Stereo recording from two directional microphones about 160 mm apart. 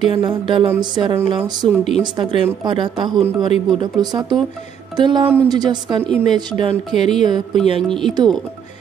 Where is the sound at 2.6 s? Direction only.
30° right (ahead or behind).